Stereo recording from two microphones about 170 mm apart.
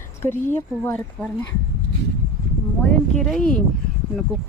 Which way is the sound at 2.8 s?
5° left (ahead or behind).